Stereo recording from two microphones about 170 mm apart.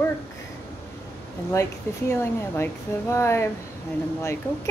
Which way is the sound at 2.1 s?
15° left (ahead or behind).